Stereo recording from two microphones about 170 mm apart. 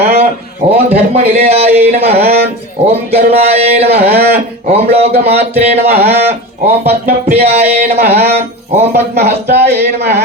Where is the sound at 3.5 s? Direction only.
35° right (ahead or behind).